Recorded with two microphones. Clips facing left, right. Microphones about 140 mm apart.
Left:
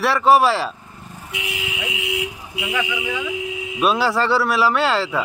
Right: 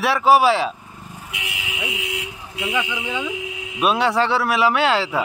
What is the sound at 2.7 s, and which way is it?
Speech, 25° right (ahead or behind).